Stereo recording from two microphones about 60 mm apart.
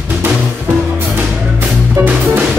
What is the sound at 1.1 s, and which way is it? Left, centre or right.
Music, right.